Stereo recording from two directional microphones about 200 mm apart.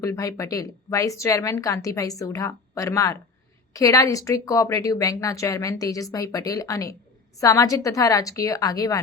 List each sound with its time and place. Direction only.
0.0 s a woman's voice: 15° left (ahead or behind)